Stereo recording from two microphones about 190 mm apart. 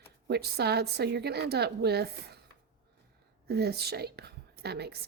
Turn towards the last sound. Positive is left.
turn(degrees=-60)  # may be behind; listen again after turning